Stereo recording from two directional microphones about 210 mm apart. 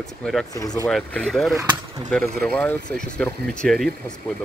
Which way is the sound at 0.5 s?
15° left (ahead or behind).